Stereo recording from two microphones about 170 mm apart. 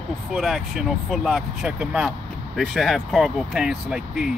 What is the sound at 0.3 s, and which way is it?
Speech, centre (ahead or behind).